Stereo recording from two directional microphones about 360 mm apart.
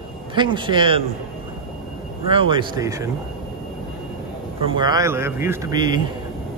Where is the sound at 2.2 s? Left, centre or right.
Centre.